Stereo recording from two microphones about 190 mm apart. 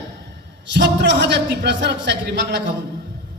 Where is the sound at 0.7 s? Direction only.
65° right (ahead or behind).